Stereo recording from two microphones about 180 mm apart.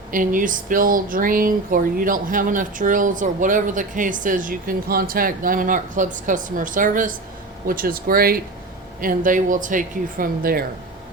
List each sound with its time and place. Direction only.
0.1 s speech: 50° right (ahead or behind)